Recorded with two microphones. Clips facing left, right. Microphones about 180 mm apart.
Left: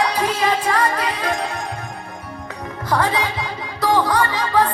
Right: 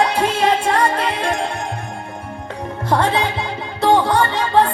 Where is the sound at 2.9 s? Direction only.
25° right (ahead or behind).